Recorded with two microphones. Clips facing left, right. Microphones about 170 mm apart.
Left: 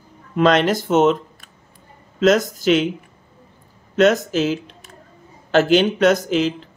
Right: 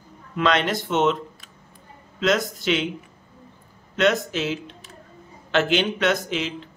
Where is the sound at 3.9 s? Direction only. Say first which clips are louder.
Left 5 dB; 40° left (ahead or behind).